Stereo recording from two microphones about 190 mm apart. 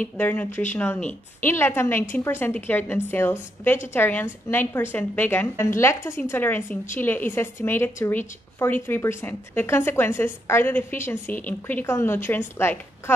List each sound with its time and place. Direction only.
0.0 s a woman's voice: 10° left (ahead or behind)